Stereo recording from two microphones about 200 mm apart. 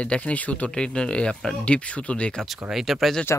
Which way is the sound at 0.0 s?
5° left (ahead or behind).